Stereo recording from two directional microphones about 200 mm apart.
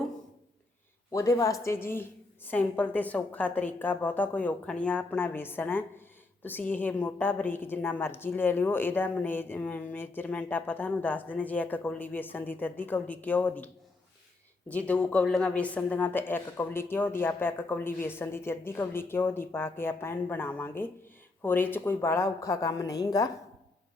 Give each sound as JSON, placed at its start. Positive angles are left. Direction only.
{"t": 1.1, "sound": "a woman's voice", "side_deg": 15}
{"t": 14.7, "sound": "a woman's voice", "side_deg": 5}